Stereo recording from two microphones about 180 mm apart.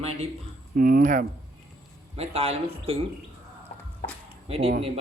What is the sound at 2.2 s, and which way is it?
Speech, 35° right (ahead or behind).